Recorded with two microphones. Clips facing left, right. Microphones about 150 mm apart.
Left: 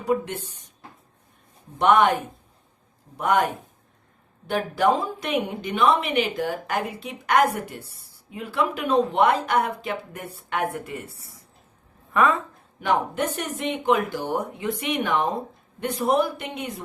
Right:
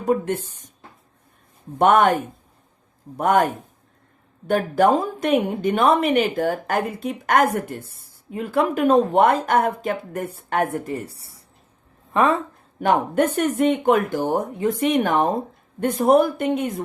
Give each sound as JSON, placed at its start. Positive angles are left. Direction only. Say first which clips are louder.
{"t": 0.0, "sound": "a woman's voice", "louder": "right 4 dB", "side_deg": -50}
{"t": 1.8, "sound": "a woman's voice", "louder": "right 3 dB", "side_deg": -50}
{"t": 4.4, "sound": "a woman's voice", "louder": "right 4 dB", "side_deg": -45}
{"t": 12.1, "sound": "a woman's voice", "louder": "right 2 dB", "side_deg": -30}
{"t": 12.8, "sound": "a woman's voice", "louder": "right 5 dB", "side_deg": -50}